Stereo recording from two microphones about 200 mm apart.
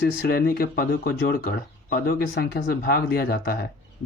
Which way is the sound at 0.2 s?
50° left (ahead or behind).